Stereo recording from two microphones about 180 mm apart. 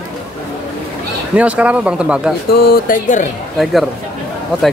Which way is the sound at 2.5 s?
50° left (ahead or behind).